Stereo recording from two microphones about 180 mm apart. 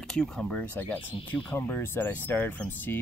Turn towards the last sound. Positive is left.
turn(degrees=10)  # may be behind; listen again after turning